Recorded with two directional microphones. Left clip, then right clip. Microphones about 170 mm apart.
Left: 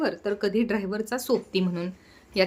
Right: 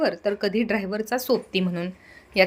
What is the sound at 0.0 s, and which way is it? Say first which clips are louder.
A woman's voice: right 3 dB; 10° right (ahead or behind).